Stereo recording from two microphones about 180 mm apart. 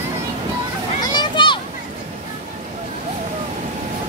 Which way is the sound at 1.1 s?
25° left (ahead or behind).